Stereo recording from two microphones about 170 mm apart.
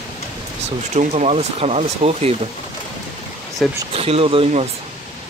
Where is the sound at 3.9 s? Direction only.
35° right (ahead or behind).